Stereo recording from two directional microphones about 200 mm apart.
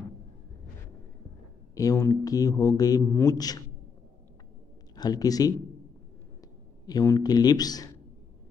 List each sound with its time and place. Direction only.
1.8 s a man's voice: 15° left (ahead or behind)
4.9 s speech: 20° left (ahead or behind)
6.9 s speech: 20° left (ahead or behind)